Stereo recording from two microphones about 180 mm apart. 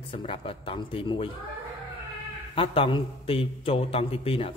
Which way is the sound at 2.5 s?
30° left (ahead or behind).